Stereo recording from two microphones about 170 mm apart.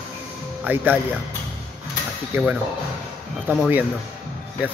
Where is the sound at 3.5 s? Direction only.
10° right (ahead or behind).